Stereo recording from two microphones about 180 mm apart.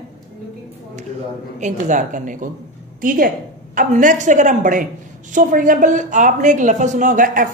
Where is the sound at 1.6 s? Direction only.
45° right (ahead or behind).